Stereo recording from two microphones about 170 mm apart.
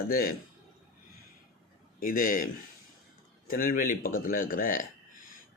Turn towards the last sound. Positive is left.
turn(degrees=55)  # may be behind; listen again after turning